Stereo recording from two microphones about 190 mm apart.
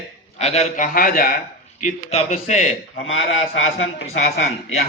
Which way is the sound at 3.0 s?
90° left.